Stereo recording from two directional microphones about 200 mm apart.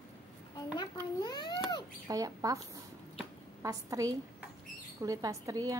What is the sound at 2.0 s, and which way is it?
Speech, 15° right (ahead or behind).